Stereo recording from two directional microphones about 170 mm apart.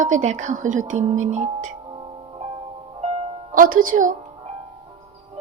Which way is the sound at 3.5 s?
55° right (ahead or behind).